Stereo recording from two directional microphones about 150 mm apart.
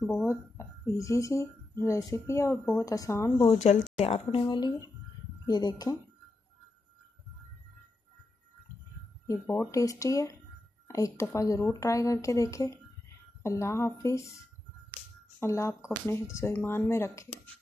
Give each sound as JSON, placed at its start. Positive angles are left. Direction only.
{"t": 0.0, "sound": "speech", "side_deg": 5}
{"t": 0.3, "sound": "speech", "side_deg": 20}
{"t": 3.4, "sound": "speech", "side_deg": 45}
{"t": 9.7, "sound": "speech", "side_deg": 20}